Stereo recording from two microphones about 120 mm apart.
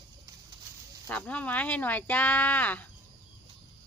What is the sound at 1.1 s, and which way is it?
Speech, 10° left (ahead or behind).